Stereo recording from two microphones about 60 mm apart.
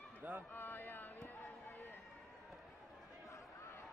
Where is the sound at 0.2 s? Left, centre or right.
Right.